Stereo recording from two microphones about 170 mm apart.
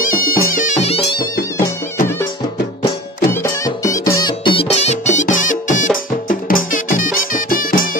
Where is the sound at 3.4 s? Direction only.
20° left (ahead or behind).